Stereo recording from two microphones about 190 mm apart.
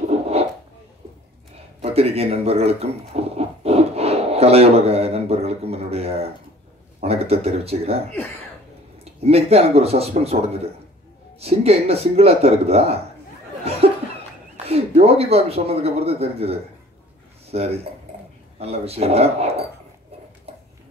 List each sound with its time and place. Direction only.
1.8 s a sound: 30° right (ahead or behind)
7.0 s speech: 35° right (ahead or behind)
9.2 s speech: 35° right (ahead or behind)
13.7 s chuckle: 35° right (ahead or behind)
14.7 s speech: 30° right (ahead or behind)
20.5 s a sound: 35° right (ahead or behind)